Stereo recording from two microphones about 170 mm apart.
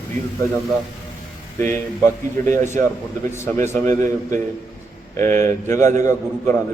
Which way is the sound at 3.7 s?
45° right (ahead or behind).